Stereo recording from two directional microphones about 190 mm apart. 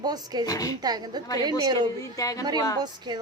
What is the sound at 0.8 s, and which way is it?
A woman's voice, 20° right (ahead or behind).